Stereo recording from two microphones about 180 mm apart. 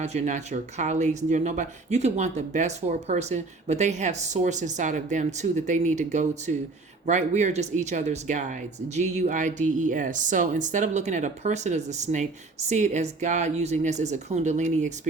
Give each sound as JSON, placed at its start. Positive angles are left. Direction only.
{"t": 0.0, "sound": "speech", "side_deg": -40}